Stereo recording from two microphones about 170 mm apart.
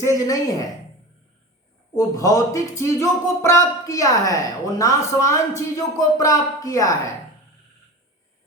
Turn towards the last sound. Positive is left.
turn(degrees=20)  # may be behind; listen again after turning